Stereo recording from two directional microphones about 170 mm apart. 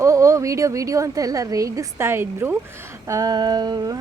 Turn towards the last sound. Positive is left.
turn(degrees=-25)  # may be behind; listen again after turning